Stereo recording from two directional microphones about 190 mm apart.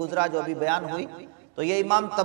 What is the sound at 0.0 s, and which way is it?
A man's voice, 20° right (ahead or behind).